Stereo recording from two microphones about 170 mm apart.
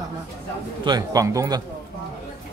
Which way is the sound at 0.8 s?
25° right (ahead or behind).